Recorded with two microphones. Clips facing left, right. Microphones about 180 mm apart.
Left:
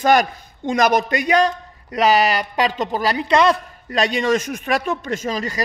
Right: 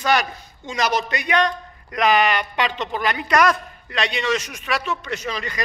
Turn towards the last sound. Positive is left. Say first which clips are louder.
# left 4 dB
turn(degrees=40)  # may be behind; listen again after turning